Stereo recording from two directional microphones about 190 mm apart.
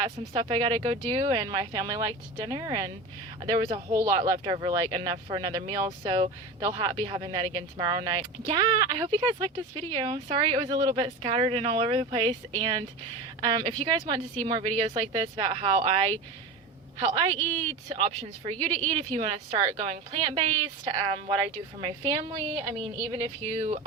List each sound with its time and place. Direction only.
0.0 s speech: 25° right (ahead or behind)
17.0 s speech: 30° right (ahead or behind)
17.3 s a woman's voice: 10° left (ahead or behind)
17.8 s speech: 30° right (ahead or behind)
23.6 s speech: 35° right (ahead or behind)